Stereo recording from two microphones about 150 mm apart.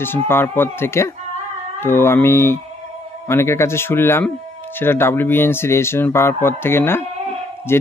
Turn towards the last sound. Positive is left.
turn(degrees=15)  # may be behind; listen again after turning